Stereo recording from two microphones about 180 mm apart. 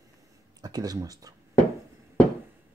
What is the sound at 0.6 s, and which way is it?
Speech, 20° right (ahead or behind).